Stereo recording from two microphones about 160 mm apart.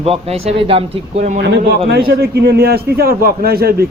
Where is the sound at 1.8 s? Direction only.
80° right.